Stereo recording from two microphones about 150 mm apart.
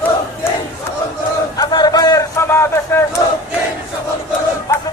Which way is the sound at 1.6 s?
25° left (ahead or behind).